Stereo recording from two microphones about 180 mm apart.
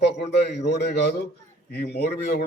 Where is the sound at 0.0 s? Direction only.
65° left (ahead or behind).